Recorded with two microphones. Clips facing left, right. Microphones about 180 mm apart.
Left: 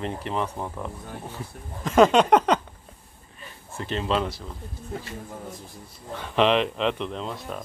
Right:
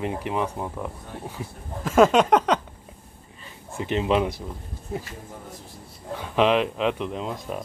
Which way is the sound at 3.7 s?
15° right (ahead or behind).